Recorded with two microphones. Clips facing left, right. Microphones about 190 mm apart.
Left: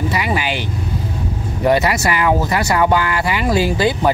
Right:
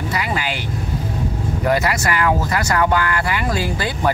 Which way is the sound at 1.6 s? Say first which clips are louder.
Left 4 dB; 20° left (ahead or behind).